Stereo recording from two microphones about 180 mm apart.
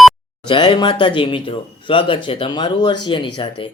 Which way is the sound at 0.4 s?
25° left (ahead or behind).